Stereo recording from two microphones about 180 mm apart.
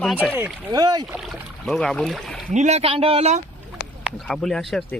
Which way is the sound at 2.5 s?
40° right (ahead or behind).